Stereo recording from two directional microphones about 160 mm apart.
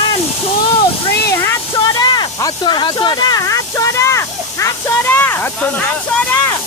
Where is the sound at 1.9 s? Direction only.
25° left (ahead or behind); by 6.4 s 10° left (ahead or behind).